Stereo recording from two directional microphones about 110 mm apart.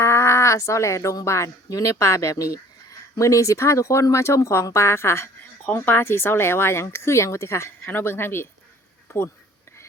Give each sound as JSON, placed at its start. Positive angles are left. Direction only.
{"t": 0.0, "sound": "speech", "side_deg": 25}